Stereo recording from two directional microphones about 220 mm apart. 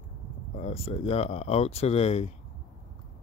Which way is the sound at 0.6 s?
25° left (ahead or behind).